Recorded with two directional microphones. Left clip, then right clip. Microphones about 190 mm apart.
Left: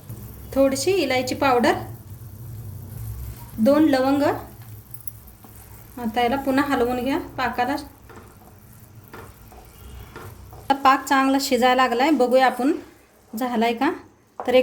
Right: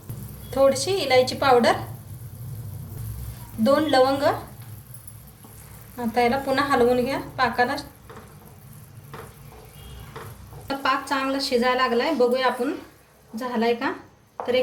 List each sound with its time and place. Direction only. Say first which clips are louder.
0.5 s a woman's voice: even; 60° left (ahead or behind)
3.6 s a woman's voice: left 1 dB; 60° left (ahead or behind)
6.1 s a woman's voice: even; 55° left (ahead or behind)
10.7 s a woman's voice: left 6 dB; 60° left (ahead or behind)